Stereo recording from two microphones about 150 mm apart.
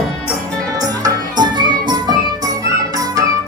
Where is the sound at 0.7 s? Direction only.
25° right (ahead or behind).